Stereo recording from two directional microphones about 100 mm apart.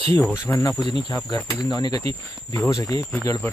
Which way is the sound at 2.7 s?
35° left (ahead or behind).